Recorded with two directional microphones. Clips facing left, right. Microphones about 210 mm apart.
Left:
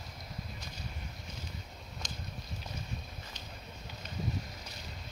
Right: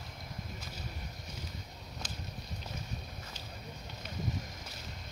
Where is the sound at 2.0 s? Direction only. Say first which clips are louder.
Left 1 dB; 5° right (ahead or behind).